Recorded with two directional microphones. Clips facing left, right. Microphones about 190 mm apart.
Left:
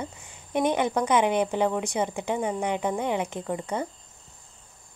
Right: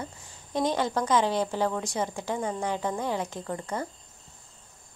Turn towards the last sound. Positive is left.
turn(degrees=15)  # may be behind; listen again after turning